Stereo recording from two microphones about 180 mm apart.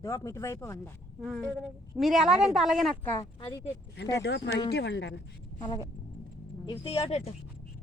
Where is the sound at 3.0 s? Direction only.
15° left (ahead or behind).